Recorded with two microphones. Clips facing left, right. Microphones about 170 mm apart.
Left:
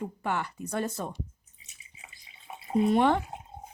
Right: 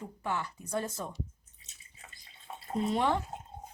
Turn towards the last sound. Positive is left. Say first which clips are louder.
# left 6 dB
turn(degrees=60)  # may be behind; listen again after turning